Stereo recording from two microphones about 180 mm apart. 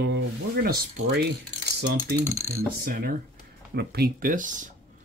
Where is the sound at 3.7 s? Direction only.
55° right (ahead or behind).